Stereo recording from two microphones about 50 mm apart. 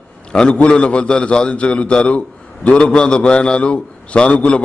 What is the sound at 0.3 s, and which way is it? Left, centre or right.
A man's voice, left.